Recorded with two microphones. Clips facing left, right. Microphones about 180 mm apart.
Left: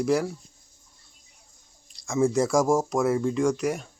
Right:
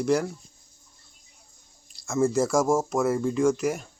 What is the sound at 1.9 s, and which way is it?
Speech, 5° right (ahead or behind).